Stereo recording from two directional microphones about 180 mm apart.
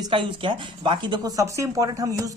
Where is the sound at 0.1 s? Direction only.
25° right (ahead or behind).